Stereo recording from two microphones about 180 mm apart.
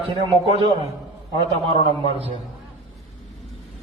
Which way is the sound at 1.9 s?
30° left (ahead or behind).